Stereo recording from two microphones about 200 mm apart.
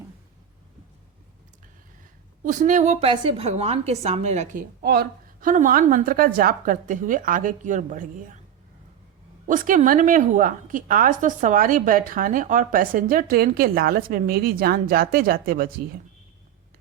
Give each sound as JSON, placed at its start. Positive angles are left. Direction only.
{"t": 2.4, "sound": "a woman's voice", "side_deg": -40}
{"t": 4.8, "sound": "a woman's voice", "side_deg": -50}
{"t": 9.5, "sound": "a woman's voice", "side_deg": -40}